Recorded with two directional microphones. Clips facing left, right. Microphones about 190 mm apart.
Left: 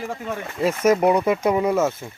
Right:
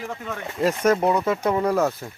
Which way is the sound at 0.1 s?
5° left (ahead or behind).